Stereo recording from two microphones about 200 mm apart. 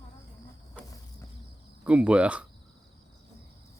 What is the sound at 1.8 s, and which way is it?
Speech, 5° right (ahead or behind).